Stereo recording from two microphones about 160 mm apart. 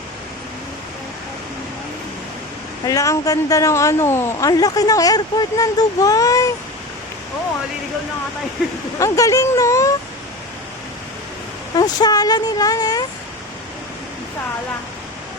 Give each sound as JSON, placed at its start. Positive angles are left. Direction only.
{"t": 2.8, "sound": "a woman's voice", "side_deg": 20}
{"t": 9.0, "sound": "a woman's voice", "side_deg": 20}
{"t": 11.8, "sound": "a woman's voice", "side_deg": 25}